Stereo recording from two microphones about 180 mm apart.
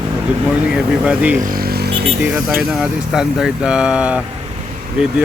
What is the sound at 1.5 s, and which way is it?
Vehicle, 55° right (ahead or behind).